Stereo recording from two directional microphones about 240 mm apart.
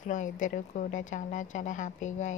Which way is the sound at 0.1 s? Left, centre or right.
Left.